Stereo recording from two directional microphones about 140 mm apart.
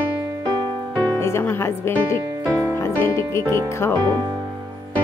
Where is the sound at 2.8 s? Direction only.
20° left (ahead or behind).